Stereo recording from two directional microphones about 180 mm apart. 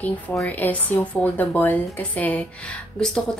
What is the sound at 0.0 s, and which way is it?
A woman's voice, 5° left (ahead or behind).